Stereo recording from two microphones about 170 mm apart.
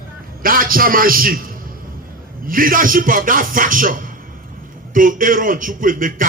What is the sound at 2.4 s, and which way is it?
A man's voice, 55° right (ahead or behind).